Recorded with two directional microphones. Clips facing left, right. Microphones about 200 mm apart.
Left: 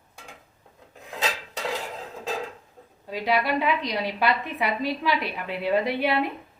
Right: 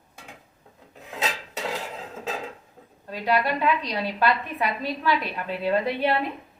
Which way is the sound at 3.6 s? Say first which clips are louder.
Right 1 dB; 15° left (ahead or behind).